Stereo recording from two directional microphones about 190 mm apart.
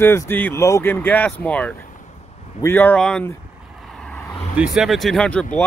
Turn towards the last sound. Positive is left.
turn(degrees=5)  # may be behind; listen again after turning